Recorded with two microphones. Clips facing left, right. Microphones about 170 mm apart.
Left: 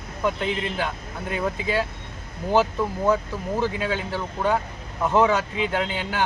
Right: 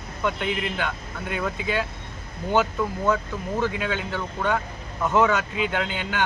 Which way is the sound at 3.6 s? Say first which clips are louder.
Left 1 dB; 35° left (ahead or behind).